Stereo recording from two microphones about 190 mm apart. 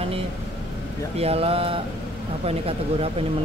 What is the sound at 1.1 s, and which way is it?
Speech, 30° right (ahead or behind).